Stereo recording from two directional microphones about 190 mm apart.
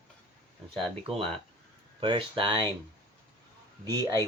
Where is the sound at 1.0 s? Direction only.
30° right (ahead or behind).